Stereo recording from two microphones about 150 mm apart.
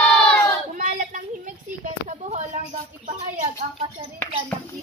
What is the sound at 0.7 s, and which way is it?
Child singing, 60° right (ahead or behind).